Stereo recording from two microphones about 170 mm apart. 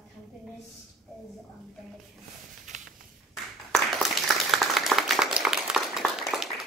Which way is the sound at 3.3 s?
Centre (ahead or behind).